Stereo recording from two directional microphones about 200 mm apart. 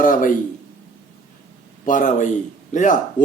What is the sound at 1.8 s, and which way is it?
A man's voice, 40° left (ahead or behind).